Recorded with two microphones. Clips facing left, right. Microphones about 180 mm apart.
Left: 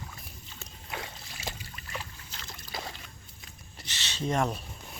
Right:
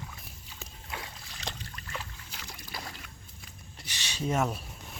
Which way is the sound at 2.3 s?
10° right (ahead or behind).